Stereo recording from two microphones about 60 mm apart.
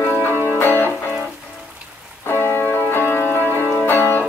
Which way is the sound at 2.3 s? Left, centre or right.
Left.